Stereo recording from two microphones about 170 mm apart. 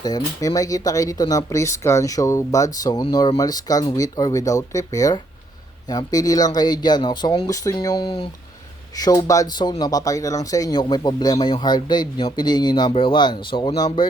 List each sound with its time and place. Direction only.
0.0 s speech: 20° left (ahead or behind)